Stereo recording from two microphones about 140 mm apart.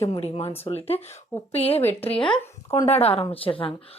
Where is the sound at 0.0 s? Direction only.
45° left (ahead or behind).